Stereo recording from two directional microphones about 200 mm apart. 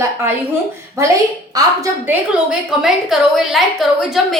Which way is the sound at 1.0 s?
15° right (ahead or behind).